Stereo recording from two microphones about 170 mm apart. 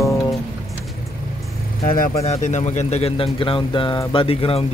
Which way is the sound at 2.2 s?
40° left (ahead or behind).